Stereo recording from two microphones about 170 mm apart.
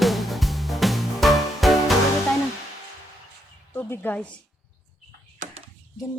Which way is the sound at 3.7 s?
10° left (ahead or behind).